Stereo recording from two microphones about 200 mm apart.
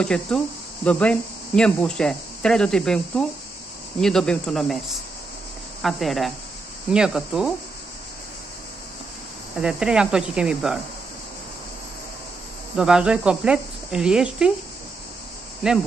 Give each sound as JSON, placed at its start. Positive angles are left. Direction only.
{"t": 0.0, "sound": "speech", "side_deg": 5}
{"t": 9.6, "sound": "speech", "side_deg": -5}
{"t": 12.7, "sound": "speech", "side_deg": -5}